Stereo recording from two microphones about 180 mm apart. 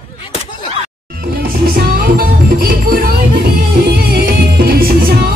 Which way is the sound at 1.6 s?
55° right (ahead or behind).